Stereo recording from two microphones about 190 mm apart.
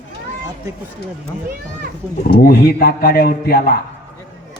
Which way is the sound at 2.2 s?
55° left (ahead or behind).